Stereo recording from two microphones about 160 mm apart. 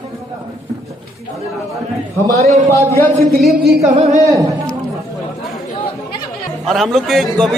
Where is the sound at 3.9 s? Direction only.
45° right (ahead or behind).